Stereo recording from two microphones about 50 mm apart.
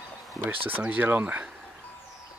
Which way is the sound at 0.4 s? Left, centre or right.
Right.